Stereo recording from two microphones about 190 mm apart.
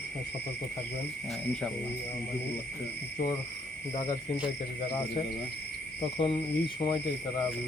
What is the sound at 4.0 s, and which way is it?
Speech, 25° left (ahead or behind).